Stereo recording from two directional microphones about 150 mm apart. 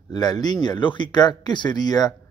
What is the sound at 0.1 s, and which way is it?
Speech, 25° left (ahead or behind).